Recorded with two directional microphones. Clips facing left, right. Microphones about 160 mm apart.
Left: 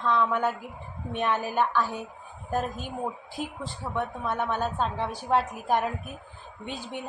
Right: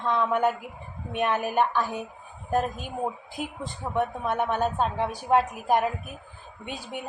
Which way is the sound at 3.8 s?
15° right (ahead or behind).